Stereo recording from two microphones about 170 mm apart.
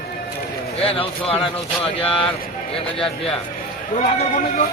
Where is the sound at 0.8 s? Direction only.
35° left (ahead or behind).